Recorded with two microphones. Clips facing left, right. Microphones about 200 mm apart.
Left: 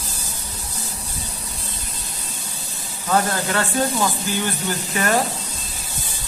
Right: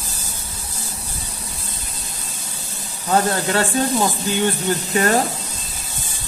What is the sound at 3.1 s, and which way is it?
Speech, 30° right (ahead or behind).